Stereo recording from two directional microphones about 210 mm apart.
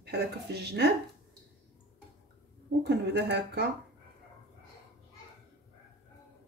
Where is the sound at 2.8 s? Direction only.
55° right (ahead or behind).